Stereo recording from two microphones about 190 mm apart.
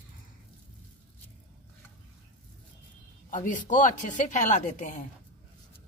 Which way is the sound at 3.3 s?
45° left (ahead or behind).